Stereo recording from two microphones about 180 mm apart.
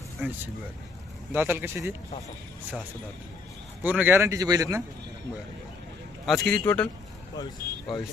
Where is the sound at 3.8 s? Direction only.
10° right (ahead or behind).